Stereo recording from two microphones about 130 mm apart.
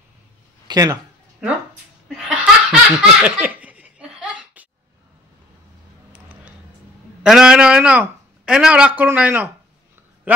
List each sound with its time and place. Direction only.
0.7 s speech: 30° right (ahead or behind)
2.0 s laughter: 5° right (ahead or behind)
6.1 s a sound: 15° right (ahead or behind)
7.2 s speech: 5° right (ahead or behind)